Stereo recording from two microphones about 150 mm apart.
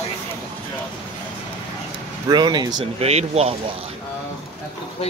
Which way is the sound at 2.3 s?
30° right (ahead or behind).